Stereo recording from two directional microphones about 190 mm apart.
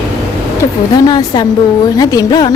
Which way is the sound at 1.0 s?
25° left (ahead or behind).